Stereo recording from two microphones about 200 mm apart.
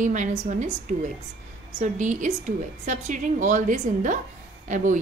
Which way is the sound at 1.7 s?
35° right (ahead or behind).